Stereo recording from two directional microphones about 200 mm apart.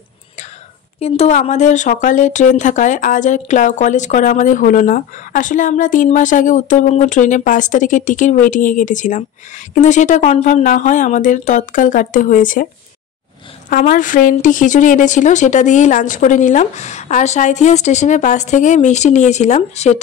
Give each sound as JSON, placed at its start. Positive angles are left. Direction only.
{"t": 0.9, "sound": "speech", "side_deg": 30}
{"t": 13.7, "sound": "speech", "side_deg": 40}